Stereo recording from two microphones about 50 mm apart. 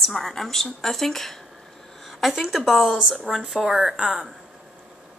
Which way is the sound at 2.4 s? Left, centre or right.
Centre.